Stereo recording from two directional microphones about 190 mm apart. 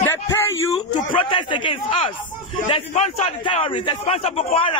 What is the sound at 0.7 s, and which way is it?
A man's voice, 25° left (ahead or behind).